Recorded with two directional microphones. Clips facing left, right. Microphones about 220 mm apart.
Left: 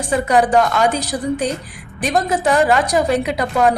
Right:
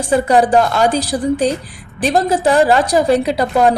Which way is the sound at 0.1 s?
30° right (ahead or behind).